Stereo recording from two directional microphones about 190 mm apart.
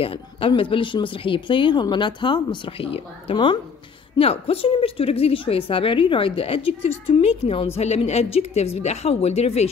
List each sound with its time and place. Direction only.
0.0 s a woman's voice: 30° left (ahead or behind)